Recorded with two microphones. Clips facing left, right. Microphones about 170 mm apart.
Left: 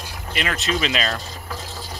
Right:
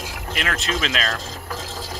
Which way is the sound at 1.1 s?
90° right.